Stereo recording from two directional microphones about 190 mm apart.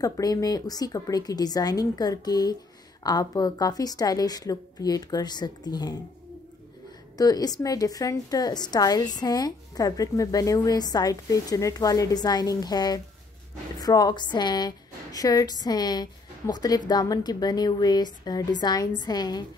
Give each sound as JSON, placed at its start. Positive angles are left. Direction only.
{"t": 0.0, "sound": "a woman's voice", "side_deg": 20}
{"t": 7.2, "sound": "a woman's voice", "side_deg": 20}